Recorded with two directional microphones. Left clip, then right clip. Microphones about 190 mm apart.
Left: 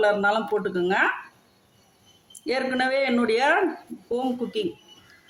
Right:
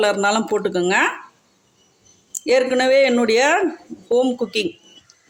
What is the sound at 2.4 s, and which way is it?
Speech, 35° right (ahead or behind).